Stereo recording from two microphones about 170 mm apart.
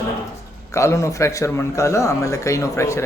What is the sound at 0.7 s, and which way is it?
A man's voice, 15° left (ahead or behind).